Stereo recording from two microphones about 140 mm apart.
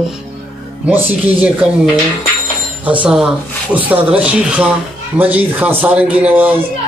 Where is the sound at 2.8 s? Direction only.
10° right (ahead or behind).